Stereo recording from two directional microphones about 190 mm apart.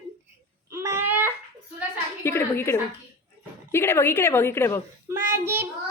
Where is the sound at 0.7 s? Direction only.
15° right (ahead or behind).